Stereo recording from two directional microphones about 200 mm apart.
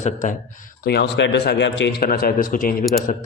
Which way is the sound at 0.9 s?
60° left (ahead or behind).